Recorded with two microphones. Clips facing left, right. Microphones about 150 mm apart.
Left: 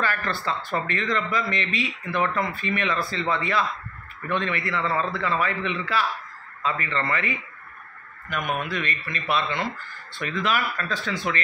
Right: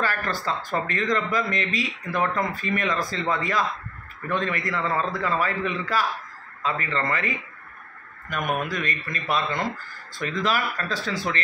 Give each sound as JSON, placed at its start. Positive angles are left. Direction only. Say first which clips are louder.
{"t": 0.3, "sound": "a man's voice", "louder": "even", "side_deg": -40}
{"t": 8.6, "sound": "a man's voice", "louder": "even", "side_deg": -40}